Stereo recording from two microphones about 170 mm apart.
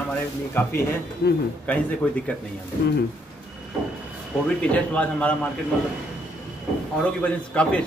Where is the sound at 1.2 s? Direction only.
70° left (ahead or behind).